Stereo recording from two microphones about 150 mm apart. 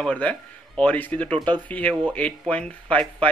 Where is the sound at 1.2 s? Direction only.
30° right (ahead or behind).